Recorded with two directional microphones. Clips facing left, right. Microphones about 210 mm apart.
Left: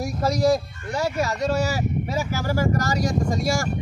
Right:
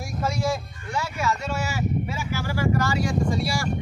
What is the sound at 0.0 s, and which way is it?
Speech, 40° left (ahead or behind).